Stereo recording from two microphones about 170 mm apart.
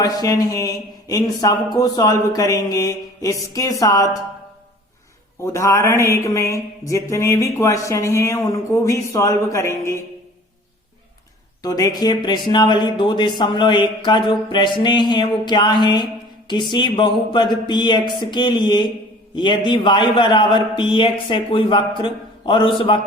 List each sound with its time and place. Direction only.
0.0 s speech: 20° left (ahead or behind)
5.4 s mantra: 20° left (ahead or behind)
11.6 s speech: 25° left (ahead or behind)